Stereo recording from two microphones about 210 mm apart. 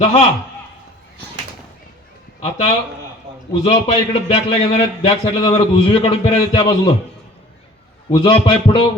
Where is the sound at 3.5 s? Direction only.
30° left (ahead or behind).